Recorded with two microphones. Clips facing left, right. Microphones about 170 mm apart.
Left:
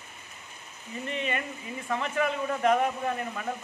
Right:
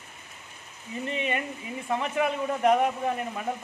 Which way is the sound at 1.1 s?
15° right (ahead or behind).